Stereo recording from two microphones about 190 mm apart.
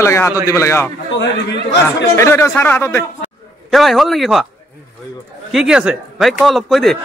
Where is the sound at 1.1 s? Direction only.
65° left (ahead or behind).